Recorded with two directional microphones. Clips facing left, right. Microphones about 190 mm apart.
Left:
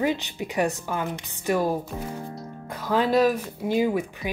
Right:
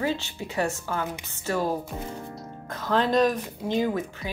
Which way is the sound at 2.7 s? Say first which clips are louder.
Left 1 dB; 10° left (ahead or behind).